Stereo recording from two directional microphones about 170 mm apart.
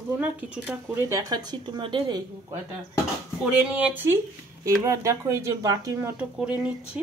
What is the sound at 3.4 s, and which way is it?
Speech, 10° right (ahead or behind).